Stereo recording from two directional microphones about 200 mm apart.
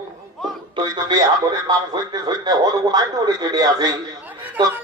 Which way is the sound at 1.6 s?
20° right (ahead or behind).